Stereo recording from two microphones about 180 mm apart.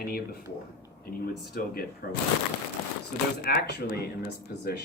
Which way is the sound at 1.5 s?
50° left (ahead or behind).